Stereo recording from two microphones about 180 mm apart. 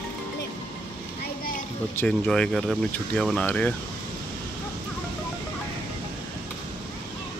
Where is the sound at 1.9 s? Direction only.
5° left (ahead or behind).